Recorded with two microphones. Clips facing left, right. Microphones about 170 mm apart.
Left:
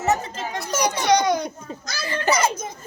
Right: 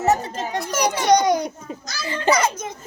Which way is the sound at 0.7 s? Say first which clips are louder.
Even; 10° right (ahead or behind).